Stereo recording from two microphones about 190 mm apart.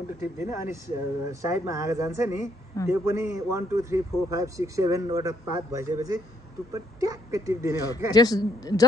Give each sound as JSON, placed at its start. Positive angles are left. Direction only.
{"t": 0.4, "sound": "a man's voice", "side_deg": -15}
{"t": 2.8, "sound": "a man's voice", "side_deg": 15}
{"t": 3.1, "sound": "a man's voice", "side_deg": -15}
{"t": 7.8, "sound": "a man's voice", "side_deg": 20}